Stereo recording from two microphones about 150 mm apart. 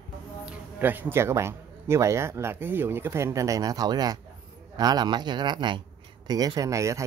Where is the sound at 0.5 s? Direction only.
10° right (ahead or behind).